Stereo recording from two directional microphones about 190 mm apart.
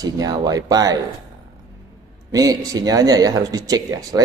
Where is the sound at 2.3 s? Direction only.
20° right (ahead or behind).